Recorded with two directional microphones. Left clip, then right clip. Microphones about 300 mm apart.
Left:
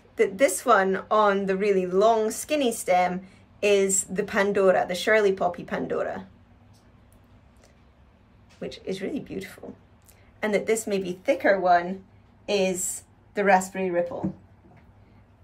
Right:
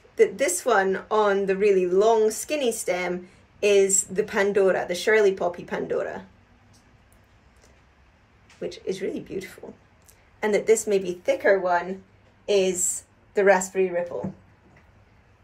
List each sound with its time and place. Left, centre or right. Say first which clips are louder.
0.1 s speech: right 1 dB; centre
8.5 s a woman's voice: right 3 dB; centre